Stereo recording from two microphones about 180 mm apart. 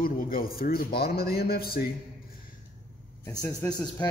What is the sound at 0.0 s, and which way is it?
A man's voice, 55° left (ahead or behind).